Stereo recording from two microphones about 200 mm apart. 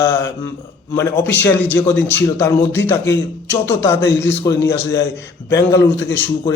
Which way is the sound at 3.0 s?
60° left (ahead or behind).